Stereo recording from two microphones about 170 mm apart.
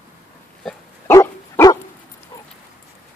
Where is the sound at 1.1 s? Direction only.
20° left (ahead or behind).